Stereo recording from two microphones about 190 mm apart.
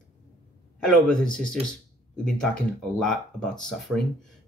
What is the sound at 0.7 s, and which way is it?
Speech, 5° left (ahead or behind).